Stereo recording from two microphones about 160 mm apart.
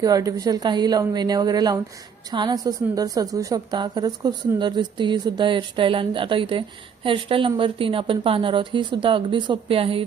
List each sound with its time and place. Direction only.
0.0 s a woman's voice: 20° right (ahead or behind)